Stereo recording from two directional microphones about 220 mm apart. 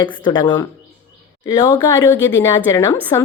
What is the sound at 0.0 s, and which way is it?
A woman's voice, 20° left (ahead or behind).